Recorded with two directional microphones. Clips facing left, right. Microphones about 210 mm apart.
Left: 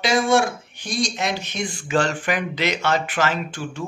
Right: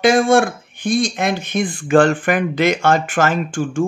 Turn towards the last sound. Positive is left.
turn(degrees=-50)  # may be behind; listen again after turning